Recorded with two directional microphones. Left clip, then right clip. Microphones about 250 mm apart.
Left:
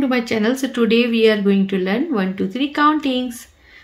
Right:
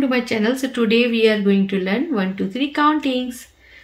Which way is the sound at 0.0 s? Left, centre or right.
Left.